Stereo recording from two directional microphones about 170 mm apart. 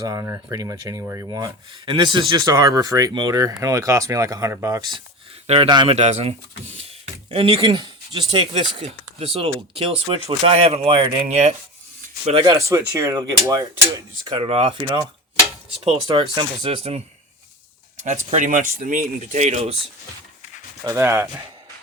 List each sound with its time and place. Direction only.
0.0 s speech: 20° right (ahead or behind)
6.0 s speech: 40° right (ahead or behind)
12.5 s speech: 15° right (ahead or behind)
14.3 s speech: 30° right (ahead or behind)
16.0 s speech: 30° right (ahead or behind)
18.0 s speech: 45° right (ahead or behind)
20.8 s speech: 15° right (ahead or behind)